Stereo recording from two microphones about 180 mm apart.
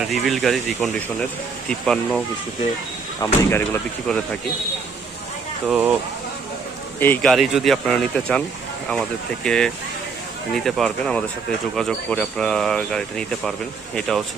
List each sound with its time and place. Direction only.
0.0 s speech: centre (ahead or behind)
5.6 s speech: 5° right (ahead or behind)
7.0 s speech: 10° left (ahead or behind)